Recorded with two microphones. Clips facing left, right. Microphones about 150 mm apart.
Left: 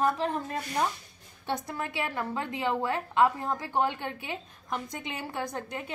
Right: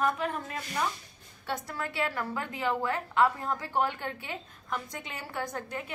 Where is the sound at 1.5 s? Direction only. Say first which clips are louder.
Left 2 dB; 20° left (ahead or behind).